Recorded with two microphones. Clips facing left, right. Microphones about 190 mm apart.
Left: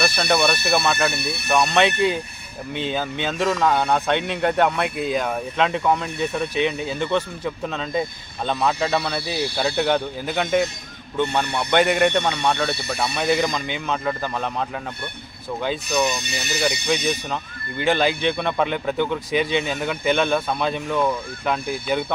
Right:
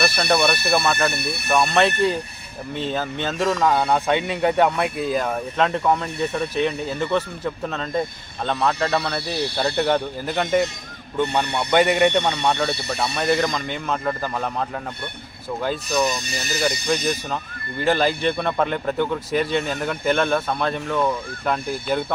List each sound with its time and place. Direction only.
0.0 s a man's voice: centre (ahead or behind)
11.7 s a man's voice: centre (ahead or behind)